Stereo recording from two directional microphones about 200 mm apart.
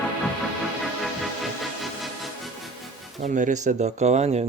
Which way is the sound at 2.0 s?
Centre (ahead or behind).